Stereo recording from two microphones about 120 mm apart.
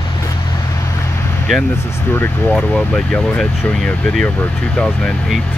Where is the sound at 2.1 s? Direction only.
20° left (ahead or behind).